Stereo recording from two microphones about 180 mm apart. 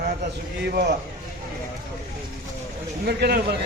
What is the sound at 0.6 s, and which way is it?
Speech, 60° right (ahead or behind).